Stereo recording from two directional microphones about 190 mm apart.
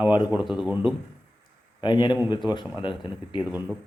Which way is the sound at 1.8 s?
25° left (ahead or behind).